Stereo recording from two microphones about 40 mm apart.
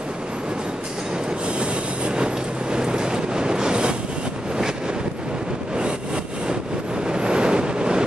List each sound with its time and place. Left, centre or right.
1.6 s train: right
7.1 s vehicle: right